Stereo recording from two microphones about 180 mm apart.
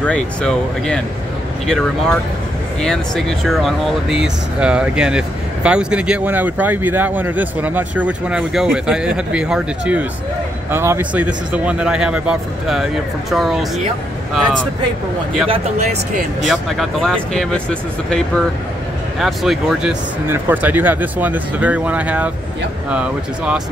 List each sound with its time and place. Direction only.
0.0 s speech: 5° left (ahead or behind)
16.4 s speech: centre (ahead or behind)